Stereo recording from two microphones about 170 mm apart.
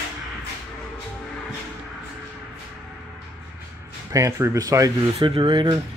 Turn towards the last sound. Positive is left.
turn(degrees=-30)  # may be behind; listen again after turning